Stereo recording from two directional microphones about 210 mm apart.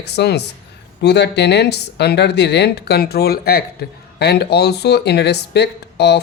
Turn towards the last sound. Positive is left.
turn(degrees=55)  # may be behind; listen again after turning